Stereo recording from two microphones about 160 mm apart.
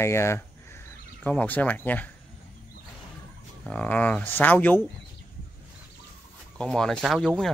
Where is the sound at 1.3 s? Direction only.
10° left (ahead or behind).